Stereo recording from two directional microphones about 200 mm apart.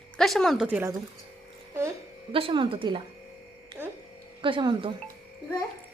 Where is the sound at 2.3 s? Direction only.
25° right (ahead or behind).